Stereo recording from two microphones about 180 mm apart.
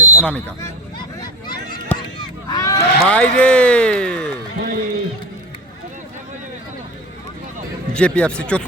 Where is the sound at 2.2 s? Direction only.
20° left (ahead or behind).